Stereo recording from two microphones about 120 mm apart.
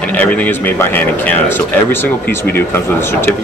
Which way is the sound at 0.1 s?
15° left (ahead or behind).